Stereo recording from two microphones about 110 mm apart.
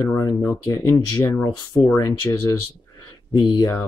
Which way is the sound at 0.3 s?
40° left (ahead or behind).